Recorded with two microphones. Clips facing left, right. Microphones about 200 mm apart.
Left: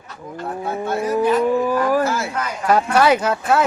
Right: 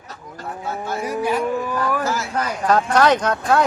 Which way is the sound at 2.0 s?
60° left (ahead or behind).